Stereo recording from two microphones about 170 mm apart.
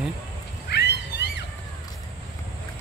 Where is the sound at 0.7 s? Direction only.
90° left.